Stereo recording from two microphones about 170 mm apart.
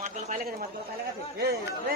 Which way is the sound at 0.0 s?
45° right (ahead or behind).